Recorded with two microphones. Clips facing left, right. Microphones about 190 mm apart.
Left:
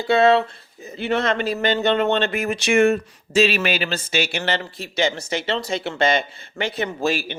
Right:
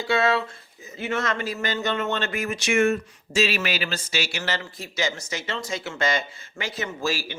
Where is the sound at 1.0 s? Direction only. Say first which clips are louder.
Left 6 dB; 30° left (ahead or behind).